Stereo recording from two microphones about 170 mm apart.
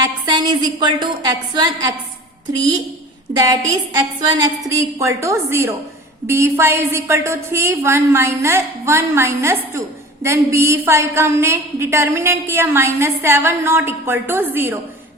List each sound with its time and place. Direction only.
0.0 s a woman's voice: 25° right (ahead or behind)
3.3 s a woman's voice: 20° right (ahead or behind)